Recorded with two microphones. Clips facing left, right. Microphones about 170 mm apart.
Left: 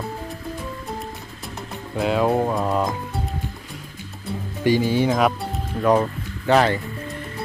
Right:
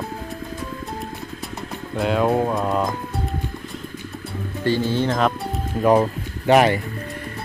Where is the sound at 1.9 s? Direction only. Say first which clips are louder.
Even; centre (ahead or behind).